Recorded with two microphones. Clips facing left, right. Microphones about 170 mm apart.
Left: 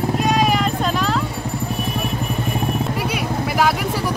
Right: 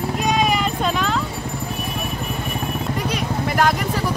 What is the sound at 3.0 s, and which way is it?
Vehicle, 5° left (ahead or behind).